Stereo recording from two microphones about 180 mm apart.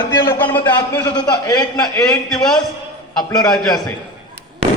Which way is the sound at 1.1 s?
25° left (ahead or behind).